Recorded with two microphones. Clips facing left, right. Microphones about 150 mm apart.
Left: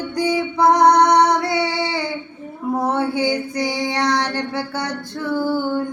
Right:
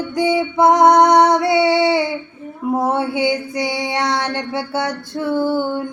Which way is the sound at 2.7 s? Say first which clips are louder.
Right 2 dB; 20° right (ahead or behind).